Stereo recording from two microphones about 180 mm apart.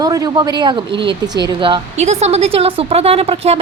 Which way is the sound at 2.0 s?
40° right (ahead or behind).